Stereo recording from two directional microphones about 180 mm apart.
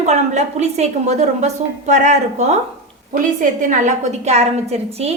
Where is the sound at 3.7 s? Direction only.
40° right (ahead or behind).